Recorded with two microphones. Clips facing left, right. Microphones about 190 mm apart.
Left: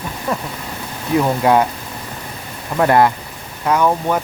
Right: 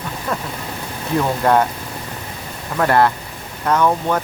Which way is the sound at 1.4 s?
10° left (ahead or behind).